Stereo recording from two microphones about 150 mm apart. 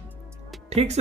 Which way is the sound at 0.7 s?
45° right (ahead or behind).